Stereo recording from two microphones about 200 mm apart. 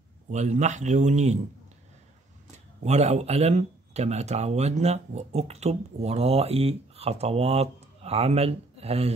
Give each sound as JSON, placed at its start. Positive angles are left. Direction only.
{"t": 0.3, "sound": "speech", "side_deg": -35}
{"t": 2.8, "sound": "speech", "side_deg": -30}